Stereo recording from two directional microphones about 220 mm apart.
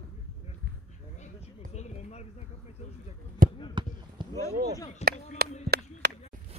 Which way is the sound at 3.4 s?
40° right (ahead or behind).